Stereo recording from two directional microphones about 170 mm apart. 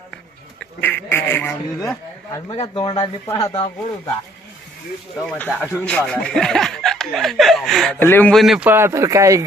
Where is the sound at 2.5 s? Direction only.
30° left (ahead or behind).